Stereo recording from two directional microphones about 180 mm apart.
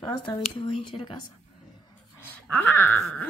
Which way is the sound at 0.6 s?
30° left (ahead or behind).